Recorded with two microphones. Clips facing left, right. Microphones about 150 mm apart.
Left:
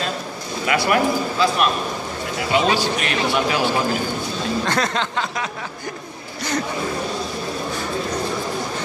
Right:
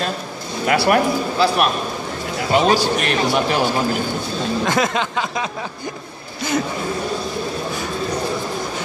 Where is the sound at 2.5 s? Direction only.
45° right (ahead or behind).